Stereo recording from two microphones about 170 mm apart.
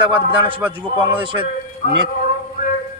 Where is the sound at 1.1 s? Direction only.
30° right (ahead or behind).